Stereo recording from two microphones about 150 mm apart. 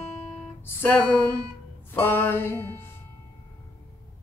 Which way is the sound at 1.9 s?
15° left (ahead or behind).